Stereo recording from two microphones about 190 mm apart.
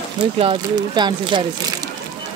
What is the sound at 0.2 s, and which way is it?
Speech, 25° right (ahead or behind).